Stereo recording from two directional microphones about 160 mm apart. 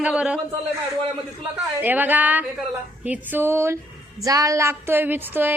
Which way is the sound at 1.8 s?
10° right (ahead or behind).